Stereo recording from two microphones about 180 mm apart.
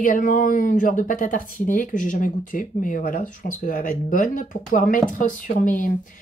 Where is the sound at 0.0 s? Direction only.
45° left (ahead or behind).